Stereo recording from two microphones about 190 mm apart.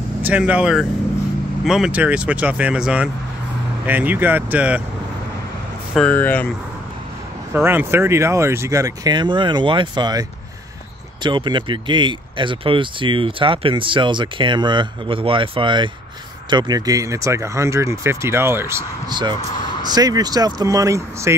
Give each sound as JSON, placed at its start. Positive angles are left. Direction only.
{"t": 0.2, "sound": "speech", "side_deg": -5}
{"t": 5.9, "sound": "speech", "side_deg": 10}
{"t": 7.5, "sound": "speech", "side_deg": -10}
{"t": 11.2, "sound": "speech", "side_deg": -25}